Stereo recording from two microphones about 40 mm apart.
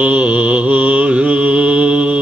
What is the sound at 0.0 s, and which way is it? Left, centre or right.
Mantra, right.